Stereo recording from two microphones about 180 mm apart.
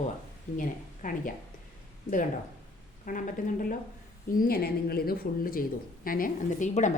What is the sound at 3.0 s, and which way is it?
A woman's voice, 50° left (ahead or behind).